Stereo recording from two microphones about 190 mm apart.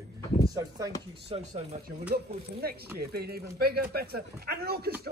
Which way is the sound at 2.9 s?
55° right (ahead or behind).